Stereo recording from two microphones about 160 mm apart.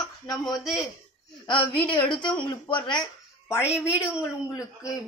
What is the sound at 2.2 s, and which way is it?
Speech, 30° left (ahead or behind).